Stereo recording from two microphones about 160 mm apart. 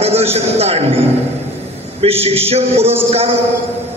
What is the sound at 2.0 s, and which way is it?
A man's voice, 40° right (ahead or behind).